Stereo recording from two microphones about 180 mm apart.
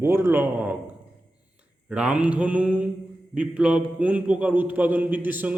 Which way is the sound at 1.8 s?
5° right (ahead or behind).